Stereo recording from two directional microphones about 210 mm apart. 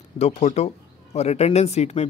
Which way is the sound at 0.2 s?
30° left (ahead or behind).